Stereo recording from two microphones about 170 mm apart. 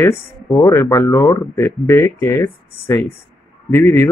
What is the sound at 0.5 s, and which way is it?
Speech, 15° left (ahead or behind).